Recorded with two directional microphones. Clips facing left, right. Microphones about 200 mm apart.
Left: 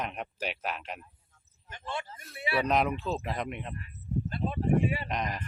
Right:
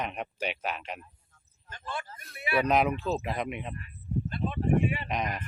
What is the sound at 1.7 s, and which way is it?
Speech, 20° left (ahead or behind).